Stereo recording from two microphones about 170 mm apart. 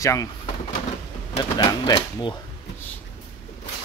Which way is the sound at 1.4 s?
25° left (ahead or behind).